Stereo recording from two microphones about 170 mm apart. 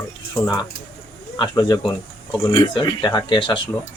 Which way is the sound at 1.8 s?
5° left (ahead or behind).